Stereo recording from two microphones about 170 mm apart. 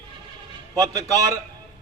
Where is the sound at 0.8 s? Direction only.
20° right (ahead or behind).